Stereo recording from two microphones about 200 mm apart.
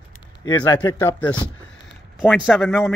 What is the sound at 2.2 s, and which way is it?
Speech, centre (ahead or behind).